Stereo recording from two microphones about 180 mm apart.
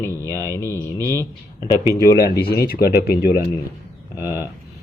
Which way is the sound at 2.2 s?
65° left (ahead or behind).